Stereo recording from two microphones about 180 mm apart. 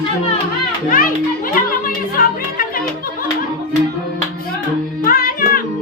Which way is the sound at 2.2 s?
55° left (ahead or behind).